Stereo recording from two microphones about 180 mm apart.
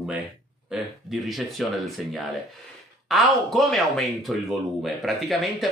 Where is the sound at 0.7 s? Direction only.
Centre (ahead or behind).